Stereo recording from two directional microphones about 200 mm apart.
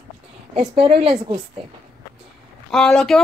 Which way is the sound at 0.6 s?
25° right (ahead or behind).